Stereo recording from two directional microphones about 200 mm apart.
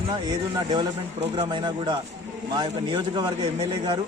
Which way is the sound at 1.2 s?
30° right (ahead or behind).